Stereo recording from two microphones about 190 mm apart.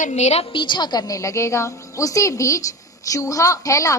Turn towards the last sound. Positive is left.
turn(degrees=15)  # may be behind; listen again after turning